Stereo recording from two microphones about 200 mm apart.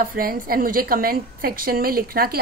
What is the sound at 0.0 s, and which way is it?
A woman's voice, 45° right (ahead or behind).